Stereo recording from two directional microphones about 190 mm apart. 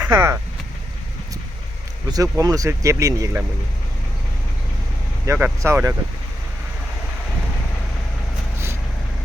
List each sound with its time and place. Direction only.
0.1 s speech: 15° right (ahead or behind)
2.0 s speech: 20° right (ahead or behind)
5.2 s speech: 15° right (ahead or behind)